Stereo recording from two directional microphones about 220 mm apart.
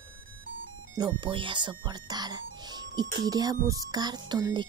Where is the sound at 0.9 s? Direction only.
20° right (ahead or behind).